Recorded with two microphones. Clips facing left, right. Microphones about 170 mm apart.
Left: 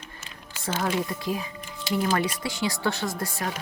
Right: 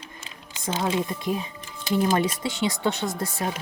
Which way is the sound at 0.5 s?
20° right (ahead or behind).